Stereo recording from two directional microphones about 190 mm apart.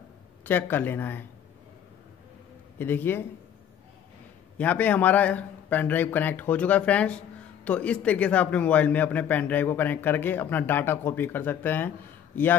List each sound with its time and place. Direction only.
0.5 s a man's voice: 10° left (ahead or behind)
2.8 s a man's voice: 10° left (ahead or behind)
4.6 s a man's voice: 10° left (ahead or behind)